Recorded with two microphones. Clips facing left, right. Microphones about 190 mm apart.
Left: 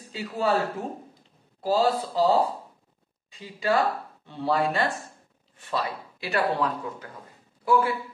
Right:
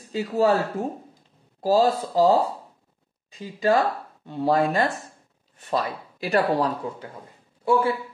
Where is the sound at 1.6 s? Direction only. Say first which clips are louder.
Right 3 dB; 40° right (ahead or behind).